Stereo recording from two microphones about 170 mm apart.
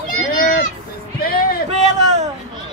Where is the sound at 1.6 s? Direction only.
40° right (ahead or behind).